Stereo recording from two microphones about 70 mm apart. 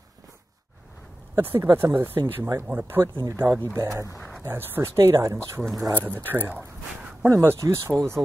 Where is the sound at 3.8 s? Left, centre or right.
Right.